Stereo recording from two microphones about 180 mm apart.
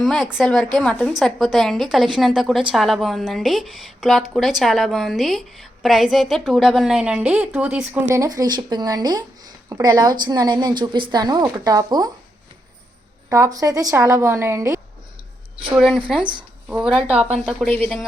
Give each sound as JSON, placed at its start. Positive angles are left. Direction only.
{"t": 0.0, "sound": "a woman's voice", "side_deg": 0}
{"t": 13.3, "sound": "a woman's voice", "side_deg": -20}
{"t": 15.7, "sound": "a woman's voice", "side_deg": 0}
{"t": 16.9, "sound": "speech", "side_deg": -30}
{"t": 17.3, "sound": "a woman's voice", "side_deg": 0}